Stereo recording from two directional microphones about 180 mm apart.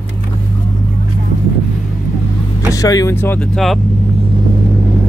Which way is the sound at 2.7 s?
20° left (ahead or behind).